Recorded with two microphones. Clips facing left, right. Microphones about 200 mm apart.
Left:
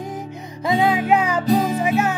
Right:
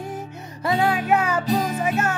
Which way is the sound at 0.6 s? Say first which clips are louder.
Left 3 dB; 20° left (ahead or behind).